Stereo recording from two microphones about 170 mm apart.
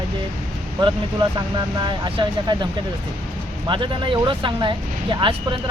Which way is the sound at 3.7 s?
30° right (ahead or behind).